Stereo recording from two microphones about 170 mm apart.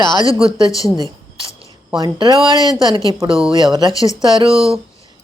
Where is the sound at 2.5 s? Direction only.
20° left (ahead or behind).